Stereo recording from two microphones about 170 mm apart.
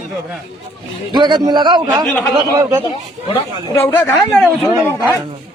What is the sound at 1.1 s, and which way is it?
Speech, 25° right (ahead or behind).